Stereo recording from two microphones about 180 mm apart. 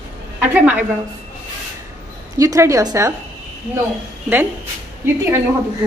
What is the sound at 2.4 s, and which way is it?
Speech, 20° right (ahead or behind).